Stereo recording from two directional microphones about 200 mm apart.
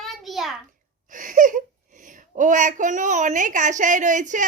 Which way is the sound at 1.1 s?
40° right (ahead or behind).